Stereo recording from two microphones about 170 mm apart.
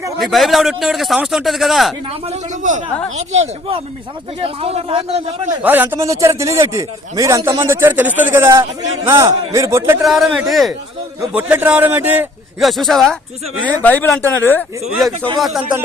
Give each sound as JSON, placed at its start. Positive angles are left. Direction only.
{"t": 0.2, "sound": "a man's voice", "side_deg": 0}
{"t": 3.2, "sound": "speech", "side_deg": -40}
{"t": 5.6, "sound": "speech", "side_deg": -10}
{"t": 10.0, "sound": "a man's voice", "side_deg": 0}
{"t": 15.2, "sound": "a man's voice", "side_deg": 0}